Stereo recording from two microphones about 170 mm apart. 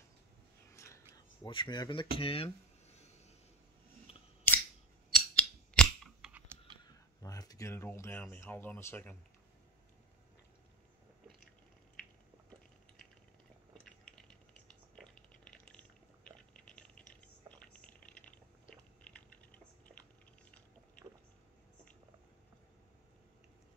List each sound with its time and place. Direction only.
0.7 s a sound: 15° left (ahead or behind)
1.1 s speech: 25° left (ahead or behind)
4.1 s scissors: 35° left (ahead or behind)
4.5 s scissors: 10° left (ahead or behind)
6.2 s typing: 10° right (ahead or behind)
6.8 s speech: 20° left (ahead or behind)
13.8 s a sound: 5° left (ahead or behind)
19.1 s typing: 5° left (ahead or behind)